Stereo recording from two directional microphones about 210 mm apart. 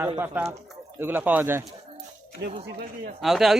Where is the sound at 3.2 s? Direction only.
Centre (ahead or behind).